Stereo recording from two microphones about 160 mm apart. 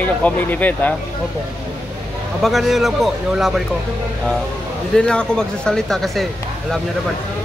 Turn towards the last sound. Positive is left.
turn(degrees=0)  # may be behind; listen again after turning